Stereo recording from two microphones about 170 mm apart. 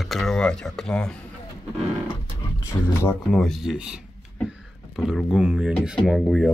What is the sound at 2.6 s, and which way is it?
Speech, 15° left (ahead or behind).